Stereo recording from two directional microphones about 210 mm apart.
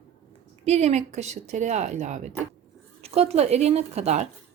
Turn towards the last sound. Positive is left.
turn(degrees=-30)  # may be behind; listen again after turning